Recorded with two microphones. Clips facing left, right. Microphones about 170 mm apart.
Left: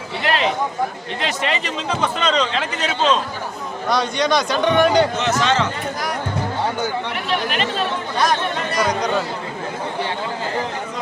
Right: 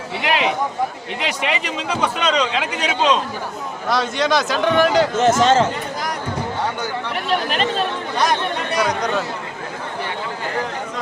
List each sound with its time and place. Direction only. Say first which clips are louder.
0.2 s a sound: even; 10° right (ahead or behind)
1.2 s speech: even; 10° right (ahead or behind)
5.4 s speech: right 4 dB; 45° right (ahead or behind)
7.3 s speech: right 3 dB; 40° right (ahead or behind)
8.7 s speech: even; centre (ahead or behind)